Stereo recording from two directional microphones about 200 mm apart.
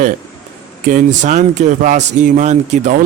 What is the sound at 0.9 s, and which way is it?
Speech, 40° right (ahead or behind).